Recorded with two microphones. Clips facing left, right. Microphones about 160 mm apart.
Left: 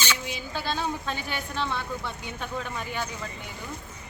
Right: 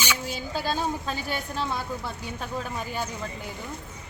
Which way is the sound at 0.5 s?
40° right (ahead or behind).